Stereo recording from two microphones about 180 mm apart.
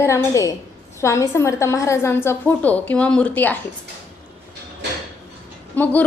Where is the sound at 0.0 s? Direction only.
15° left (ahead or behind).